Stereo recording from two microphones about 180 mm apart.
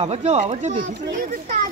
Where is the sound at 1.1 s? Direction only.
45° right (ahead or behind).